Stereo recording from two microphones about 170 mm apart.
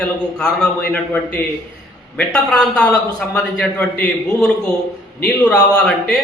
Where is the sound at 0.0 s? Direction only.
5° left (ahead or behind).